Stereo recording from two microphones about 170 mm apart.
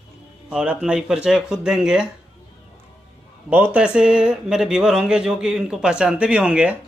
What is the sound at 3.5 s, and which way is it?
Speech, 10° right (ahead or behind).